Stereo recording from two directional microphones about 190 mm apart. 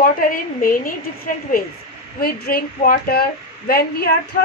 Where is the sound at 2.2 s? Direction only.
50° left (ahead or behind).